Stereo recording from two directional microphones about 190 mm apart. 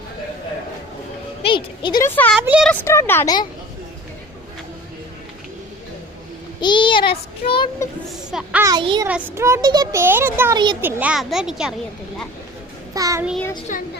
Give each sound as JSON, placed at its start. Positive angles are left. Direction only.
{"t": 1.4, "sound": "a sound", "side_deg": 25}
{"t": 2.0, "sound": "a child's voice", "side_deg": 10}
{"t": 2.4, "sound": "a child's voice", "side_deg": -5}
{"t": 2.8, "sound": "a child's voice", "side_deg": 15}
{"t": 6.6, "sound": "child singing", "side_deg": 25}
{"t": 8.3, "sound": "speech", "side_deg": -5}
{"t": 8.6, "sound": "a child's voice", "side_deg": -25}
{"t": 9.0, "sound": "a child's voice", "side_deg": -10}
{"t": 12.9, "sound": "a child's voice", "side_deg": -20}